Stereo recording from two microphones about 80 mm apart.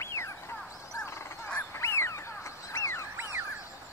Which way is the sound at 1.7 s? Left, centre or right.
Left.